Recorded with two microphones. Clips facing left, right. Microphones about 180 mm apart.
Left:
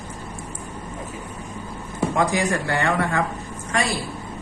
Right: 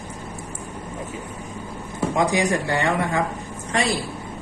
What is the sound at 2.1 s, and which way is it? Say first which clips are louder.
Speech: right 2 dB; 15° right (ahead or behind).